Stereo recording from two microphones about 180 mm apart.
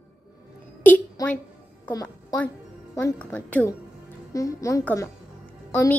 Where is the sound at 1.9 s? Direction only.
10° left (ahead or behind).